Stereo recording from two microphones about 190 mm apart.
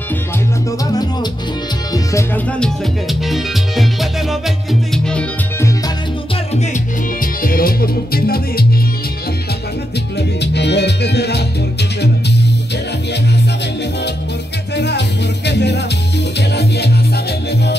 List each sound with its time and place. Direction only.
0.7 s music: 20° left (ahead or behind)
2.1 s music: 5° left (ahead or behind)
6.5 s music: 35° left (ahead or behind)
7.4 s music: 50° left (ahead or behind)
10.1 s music: 65° left (ahead or behind)
14.8 s music: 60° left (ahead or behind)